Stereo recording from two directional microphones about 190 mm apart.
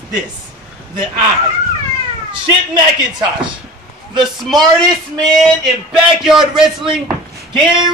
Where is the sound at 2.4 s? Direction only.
25° right (ahead or behind).